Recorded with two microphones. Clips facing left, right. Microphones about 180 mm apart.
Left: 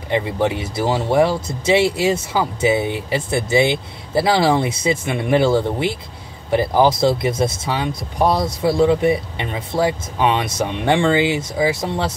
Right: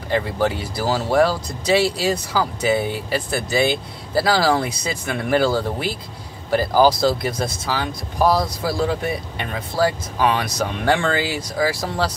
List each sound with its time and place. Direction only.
0.1 s speech: 20° left (ahead or behind)